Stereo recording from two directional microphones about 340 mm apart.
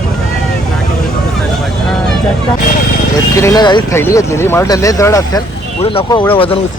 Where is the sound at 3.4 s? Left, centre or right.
Centre.